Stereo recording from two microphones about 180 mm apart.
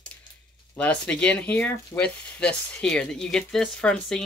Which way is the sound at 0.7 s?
5° left (ahead or behind).